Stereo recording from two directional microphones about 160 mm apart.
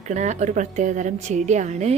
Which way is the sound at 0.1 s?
45° right (ahead or behind).